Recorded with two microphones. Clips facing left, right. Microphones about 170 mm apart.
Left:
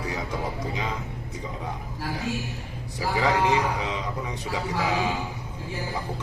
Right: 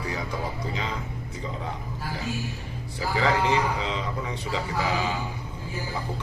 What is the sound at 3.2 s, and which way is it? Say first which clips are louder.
Speech: left 1 dB; 15° left (ahead or behind).